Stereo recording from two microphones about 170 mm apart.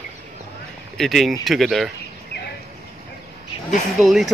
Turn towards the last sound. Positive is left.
turn(degrees=0)  # may be behind; listen again after turning